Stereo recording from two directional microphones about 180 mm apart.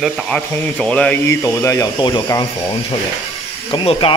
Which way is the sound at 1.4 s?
20° left (ahead or behind).